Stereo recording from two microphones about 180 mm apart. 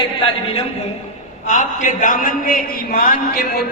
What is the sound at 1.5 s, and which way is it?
A man's voice, 45° left (ahead or behind).